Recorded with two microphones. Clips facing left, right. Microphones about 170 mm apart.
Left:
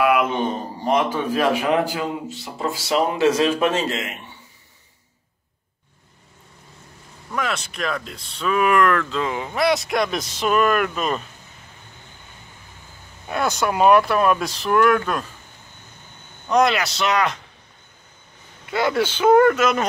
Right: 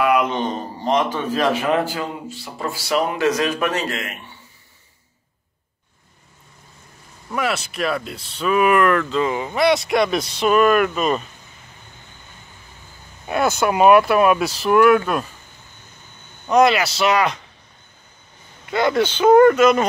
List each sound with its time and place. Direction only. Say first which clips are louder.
0.0 s a man's voice: even; 5° left (ahead or behind)
7.3 s speech: right 3 dB; 5° right (ahead or behind)
13.3 s speech: right 3 dB; 5° right (ahead or behind)
16.4 s speech: right 3 dB; 5° right (ahead or behind)
18.7 s speech: right 2 dB; 5° left (ahead or behind)